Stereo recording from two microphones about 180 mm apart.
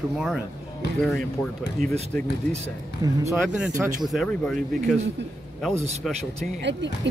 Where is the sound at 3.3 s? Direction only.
5° right (ahead or behind).